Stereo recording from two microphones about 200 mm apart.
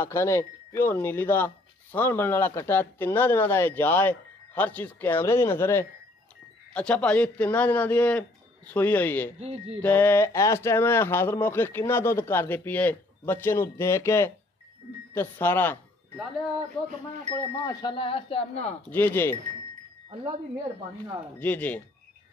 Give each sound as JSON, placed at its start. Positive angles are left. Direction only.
{"t": 0.0, "sound": "speech", "side_deg": 15}
{"t": 9.4, "sound": "speech", "side_deg": -30}
{"t": 9.8, "sound": "speech", "side_deg": 10}
{"t": 17.3, "sound": "speech", "side_deg": 20}
{"t": 18.9, "sound": "speech", "side_deg": 10}
{"t": 21.4, "sound": "speech", "side_deg": 10}